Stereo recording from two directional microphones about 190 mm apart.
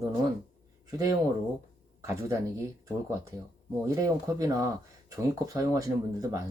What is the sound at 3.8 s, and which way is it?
Speech, 15° right (ahead or behind).